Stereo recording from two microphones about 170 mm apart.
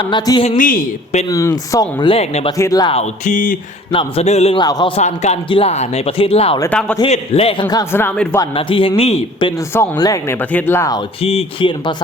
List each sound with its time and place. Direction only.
0.0 s speech: 25° left (ahead or behind)
0.5 s speech: 55° left (ahead or behind)
1.3 s speech: 20° left (ahead or behind); by 2.5 s 35° left (ahead or behind)
2.6 s speech: 20° left (ahead or behind)
2.9 s speech: 45° left (ahead or behind)
3.9 s speech: 35° left (ahead or behind)
4.5 s speech: 25° left (ahead or behind)
4.9 s speech: 40° left (ahead or behind)
6.6 s speech: 5° left (ahead or behind)
7.0 s speech: 35° left (ahead or behind)
7.7 s speech: 15° left (ahead or behind)
8.5 s speech: 30° left (ahead or behind)
9.7 s speech: 15° left (ahead or behind)
11.2 s speech: 35° left (ahead or behind)